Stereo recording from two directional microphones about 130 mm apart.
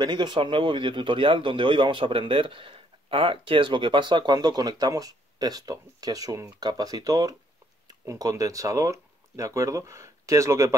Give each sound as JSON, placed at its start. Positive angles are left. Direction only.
{"t": 0.0, "sound": "speech", "side_deg": -35}